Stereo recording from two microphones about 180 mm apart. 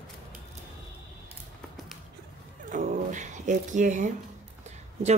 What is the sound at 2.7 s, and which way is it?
Speech, 45° right (ahead or behind).